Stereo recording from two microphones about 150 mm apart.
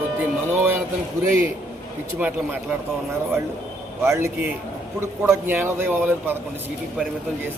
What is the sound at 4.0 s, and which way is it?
A man's voice, 20° right (ahead or behind).